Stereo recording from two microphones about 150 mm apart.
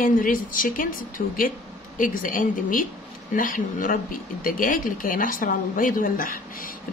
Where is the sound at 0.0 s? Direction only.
65° left (ahead or behind).